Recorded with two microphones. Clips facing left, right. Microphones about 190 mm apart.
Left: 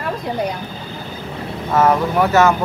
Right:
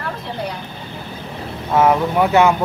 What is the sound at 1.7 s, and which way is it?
Speech, 10° right (ahead or behind).